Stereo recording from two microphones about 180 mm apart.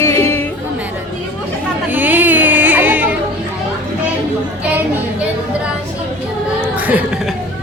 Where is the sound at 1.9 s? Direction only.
10° right (ahead or behind).